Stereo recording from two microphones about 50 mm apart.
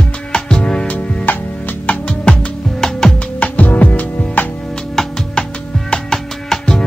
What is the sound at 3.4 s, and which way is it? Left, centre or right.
Music, left.